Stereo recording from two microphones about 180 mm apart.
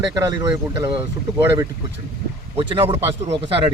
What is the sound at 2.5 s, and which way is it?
A man's voice, 30° right (ahead or behind).